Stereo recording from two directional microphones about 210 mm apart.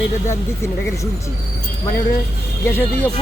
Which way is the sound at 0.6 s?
15° left (ahead or behind).